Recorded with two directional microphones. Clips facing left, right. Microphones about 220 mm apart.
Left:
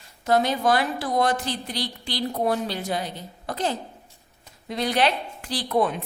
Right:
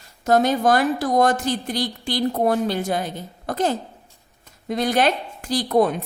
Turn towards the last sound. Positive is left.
turn(degrees=-40)  # may be behind; listen again after turning